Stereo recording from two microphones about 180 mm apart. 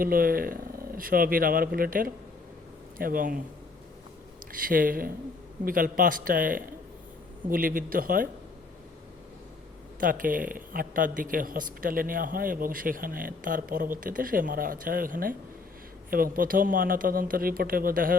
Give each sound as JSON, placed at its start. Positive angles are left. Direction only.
{"t": 0.0, "sound": "speech", "side_deg": -55}
{"t": 4.6, "sound": "speech", "side_deg": -50}
{"t": 10.0, "sound": "speech", "side_deg": -50}